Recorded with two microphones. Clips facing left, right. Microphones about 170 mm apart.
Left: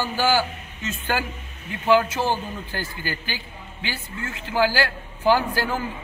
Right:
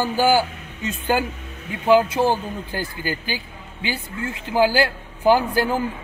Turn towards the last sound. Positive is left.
turn(degrees=-15)  # may be behind; listen again after turning